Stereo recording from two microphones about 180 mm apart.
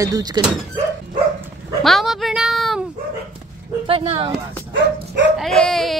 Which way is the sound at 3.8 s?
30° right (ahead or behind).